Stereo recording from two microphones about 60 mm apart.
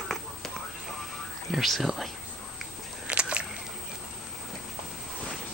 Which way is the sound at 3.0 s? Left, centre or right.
Centre.